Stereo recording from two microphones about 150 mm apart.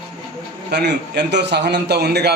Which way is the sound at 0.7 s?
90° right.